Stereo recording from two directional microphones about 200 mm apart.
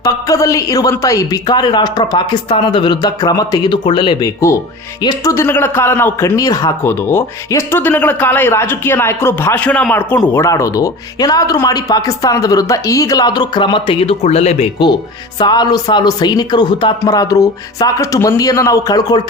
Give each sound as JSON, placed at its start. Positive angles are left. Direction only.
{"t": 0.0, "sound": "a man's voice", "side_deg": 15}